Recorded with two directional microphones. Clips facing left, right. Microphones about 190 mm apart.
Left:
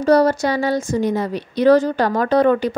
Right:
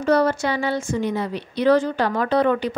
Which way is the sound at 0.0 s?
40° left (ahead or behind).